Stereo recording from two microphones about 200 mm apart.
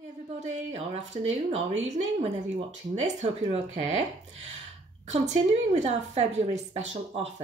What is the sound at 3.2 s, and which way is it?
Speech, 30° right (ahead or behind).